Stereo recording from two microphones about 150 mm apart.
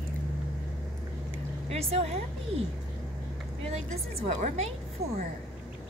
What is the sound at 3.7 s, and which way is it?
A woman's voice, 50° right (ahead or behind).